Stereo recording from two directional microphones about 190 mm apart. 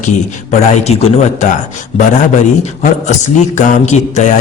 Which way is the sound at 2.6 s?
35° left (ahead or behind).